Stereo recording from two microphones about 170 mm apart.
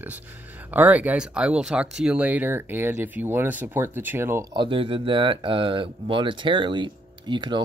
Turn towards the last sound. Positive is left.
turn(degrees=-25)  # may be behind; listen again after turning